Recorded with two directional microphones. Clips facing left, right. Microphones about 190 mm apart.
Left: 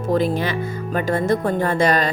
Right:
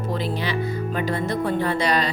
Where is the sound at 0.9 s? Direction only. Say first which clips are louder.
Left 7 dB; 45° left (ahead or behind).